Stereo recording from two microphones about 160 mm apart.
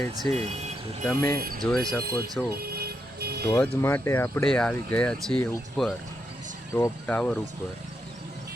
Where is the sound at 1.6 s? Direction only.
Centre (ahead or behind).